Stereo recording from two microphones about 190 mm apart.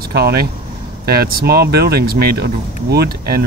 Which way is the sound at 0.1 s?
55° right (ahead or behind).